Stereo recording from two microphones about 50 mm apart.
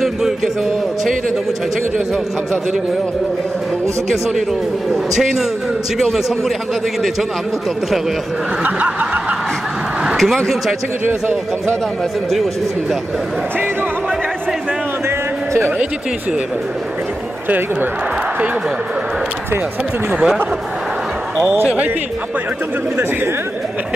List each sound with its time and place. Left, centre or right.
5.1 s a man's voice: centre
8.6 s snicker: right
10.0 s a sound: centre
11.1 s speech: right
15.0 s a sound: right
20.1 s speech: centre